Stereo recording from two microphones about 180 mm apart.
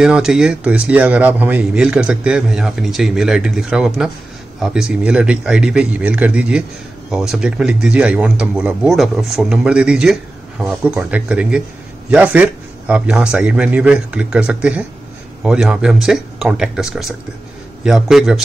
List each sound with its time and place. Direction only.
0.0 s a man's voice: 5° right (ahead or behind)